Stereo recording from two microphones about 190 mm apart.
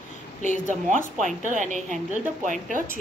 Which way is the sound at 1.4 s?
40° right (ahead or behind).